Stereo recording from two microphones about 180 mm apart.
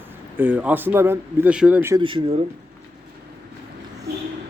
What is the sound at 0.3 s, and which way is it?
Speech, 10° right (ahead or behind).